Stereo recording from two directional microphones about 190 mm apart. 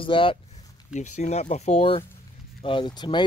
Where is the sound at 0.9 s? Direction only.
40° left (ahead or behind).